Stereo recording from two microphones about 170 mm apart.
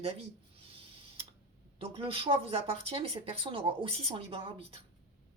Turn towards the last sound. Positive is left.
turn(degrees=-30)  # may be behind; listen again after turning